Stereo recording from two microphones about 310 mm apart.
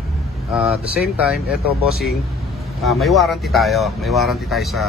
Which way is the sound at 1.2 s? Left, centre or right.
Centre.